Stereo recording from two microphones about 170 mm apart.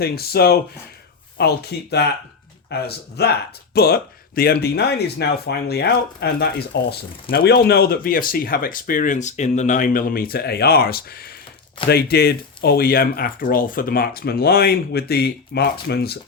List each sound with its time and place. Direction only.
0.0 s speech: 65° left (ahead or behind); by 6.9 s 85° left
7.3 s speech: 65° left (ahead or behind)